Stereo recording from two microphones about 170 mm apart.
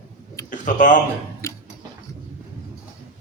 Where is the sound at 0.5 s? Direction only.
50° left (ahead or behind).